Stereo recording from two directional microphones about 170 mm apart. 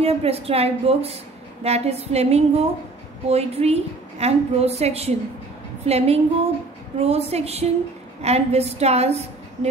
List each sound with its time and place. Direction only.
0.0 s a woman's voice: 35° right (ahead or behind)